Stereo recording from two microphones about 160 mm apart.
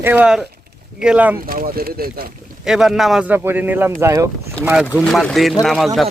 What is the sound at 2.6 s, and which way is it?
Speech, 5° right (ahead or behind).